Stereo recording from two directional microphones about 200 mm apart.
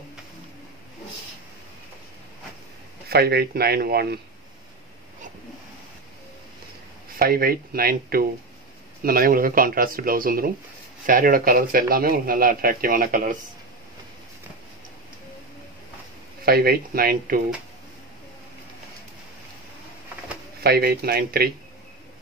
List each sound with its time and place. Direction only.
3.1 s a man's voice: 50° right (ahead or behind)
7.2 s a man's voice: 50° right (ahead or behind)
16.4 s a man's voice: 50° right (ahead or behind)
20.6 s a man's voice: 50° right (ahead or behind)